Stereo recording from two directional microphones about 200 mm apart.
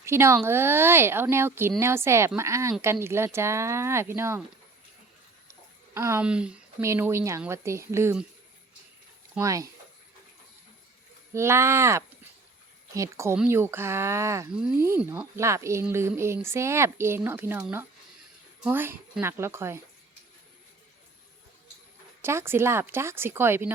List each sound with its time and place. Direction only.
0.0 s speech: 15° right (ahead or behind)
5.5 s speech: 15° right (ahead or behind)
9.3 s speech: 15° right (ahead or behind)
11.3 s speech: 15° right (ahead or behind)
14.5 s speech: 5° right (ahead or behind)
22.2 s speech: 10° right (ahead or behind)